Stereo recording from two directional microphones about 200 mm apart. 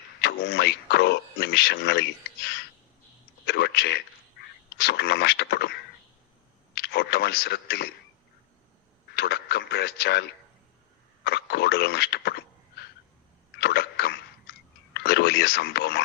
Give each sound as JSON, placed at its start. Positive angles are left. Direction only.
{"t": 0.2, "sound": "a man's voice", "side_deg": 55}
{"t": 3.4, "sound": "a sound", "side_deg": 55}
{"t": 6.7, "sound": "speech", "side_deg": 55}
{"t": 9.1, "sound": "speech", "side_deg": 55}
{"t": 13.6, "sound": "a sound", "side_deg": 55}
{"t": 14.9, "sound": "speech", "side_deg": 55}